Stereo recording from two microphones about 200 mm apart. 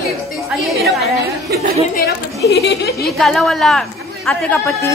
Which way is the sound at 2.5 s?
55° left (ahead or behind).